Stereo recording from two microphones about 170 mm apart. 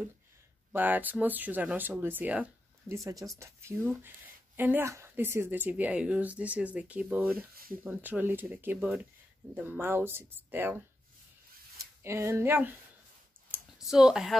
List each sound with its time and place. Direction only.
0.7 s speech: 10° right (ahead or behind)
7.3 s speech: 60° right (ahead or behind)
7.8 s speech: 10° right (ahead or behind)
12.0 s speech: 15° right (ahead or behind)
13.5 s a sound: 5° right (ahead or behind)